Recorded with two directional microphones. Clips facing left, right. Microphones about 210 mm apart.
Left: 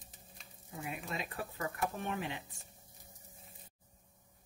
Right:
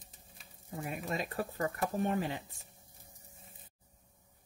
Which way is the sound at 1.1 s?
40° right (ahead or behind).